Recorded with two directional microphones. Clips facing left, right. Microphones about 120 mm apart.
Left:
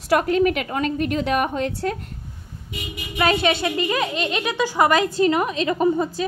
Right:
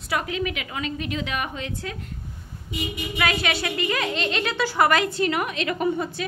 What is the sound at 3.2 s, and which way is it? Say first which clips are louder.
A woman's voice: left 6 dB; 25° left (ahead or behind).